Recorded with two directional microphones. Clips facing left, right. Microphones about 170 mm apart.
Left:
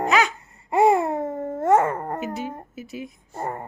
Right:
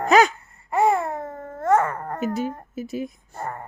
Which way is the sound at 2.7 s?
40° right (ahead or behind).